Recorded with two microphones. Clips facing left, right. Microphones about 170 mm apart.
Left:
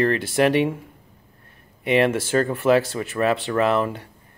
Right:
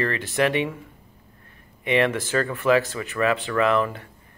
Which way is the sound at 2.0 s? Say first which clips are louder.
Left 3 dB; 45° left (ahead or behind).